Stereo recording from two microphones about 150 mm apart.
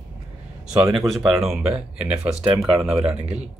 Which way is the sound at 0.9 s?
Centre (ahead or behind).